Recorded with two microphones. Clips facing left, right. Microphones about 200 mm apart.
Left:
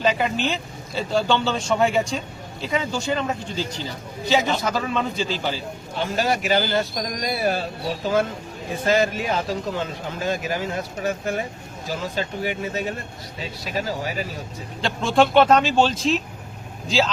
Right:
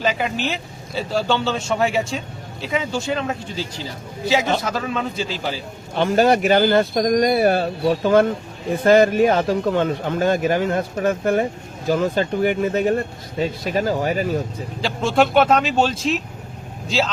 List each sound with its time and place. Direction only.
0.0 s speech: centre (ahead or behind)
6.0 s speech: 50° right (ahead or behind)
14.8 s speech: 5° right (ahead or behind)